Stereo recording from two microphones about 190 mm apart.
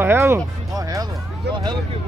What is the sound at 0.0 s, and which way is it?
Music, 10° right (ahead or behind).